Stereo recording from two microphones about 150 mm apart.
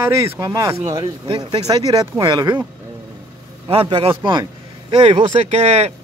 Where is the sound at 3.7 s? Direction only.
40° right (ahead or behind).